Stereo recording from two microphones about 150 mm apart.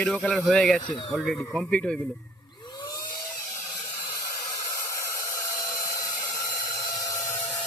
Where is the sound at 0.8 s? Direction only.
30° left (ahead or behind).